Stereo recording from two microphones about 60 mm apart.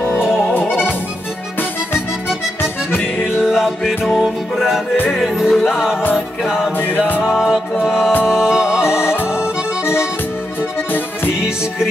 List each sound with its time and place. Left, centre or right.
0.0 s music: left
3.4 s music: centre